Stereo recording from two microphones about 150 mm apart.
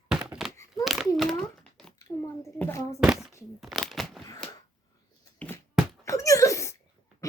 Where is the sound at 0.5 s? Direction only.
20° left (ahead or behind).